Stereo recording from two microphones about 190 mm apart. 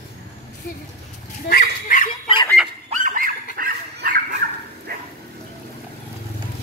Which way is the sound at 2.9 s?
45° right (ahead or behind).